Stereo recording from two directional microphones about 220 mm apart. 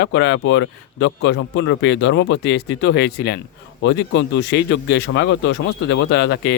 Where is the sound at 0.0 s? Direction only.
55° left (ahead or behind).